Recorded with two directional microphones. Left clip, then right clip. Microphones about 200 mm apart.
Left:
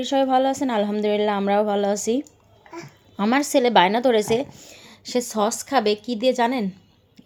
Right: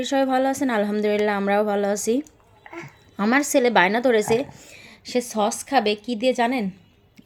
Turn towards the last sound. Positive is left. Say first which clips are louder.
# left 1 dB
turn(degrees=0)  # may be behind; listen again after turning